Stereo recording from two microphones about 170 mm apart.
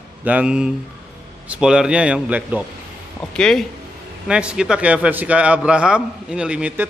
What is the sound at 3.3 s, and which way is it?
A man's voice, 5° left (ahead or behind).